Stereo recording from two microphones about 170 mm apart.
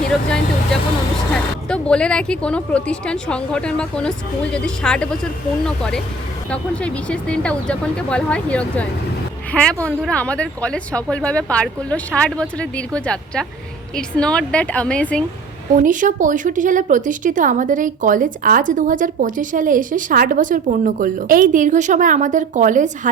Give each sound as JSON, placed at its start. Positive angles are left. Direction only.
{"t": 0.3, "sound": "a woman's voice", "side_deg": 5}
{"t": 15.8, "sound": "speech", "side_deg": -50}